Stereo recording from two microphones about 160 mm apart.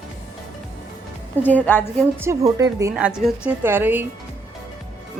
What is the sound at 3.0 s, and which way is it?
Speech, 5° right (ahead or behind).